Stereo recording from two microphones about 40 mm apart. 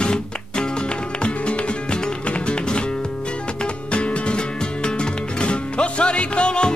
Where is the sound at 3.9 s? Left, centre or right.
Left.